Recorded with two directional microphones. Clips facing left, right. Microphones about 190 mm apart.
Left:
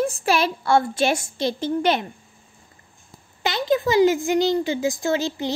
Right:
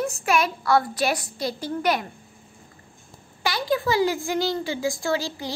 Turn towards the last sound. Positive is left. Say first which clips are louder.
# left 4 dB
turn(degrees=20)  # may be behind; listen again after turning